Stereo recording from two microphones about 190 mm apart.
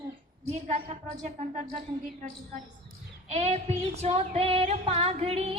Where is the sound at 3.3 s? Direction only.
35° right (ahead or behind).